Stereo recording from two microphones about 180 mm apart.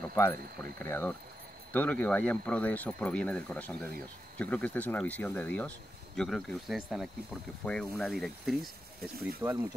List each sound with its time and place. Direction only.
0.1 s speech: 10° left (ahead or behind)
9.4 s speech: 15° right (ahead or behind)